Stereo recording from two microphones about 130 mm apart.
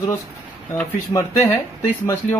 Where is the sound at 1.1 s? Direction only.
15° left (ahead or behind).